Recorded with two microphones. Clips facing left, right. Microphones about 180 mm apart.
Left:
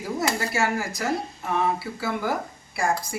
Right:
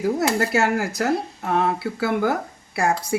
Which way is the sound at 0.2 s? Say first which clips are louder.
Right 5 dB; 65° right (ahead or behind).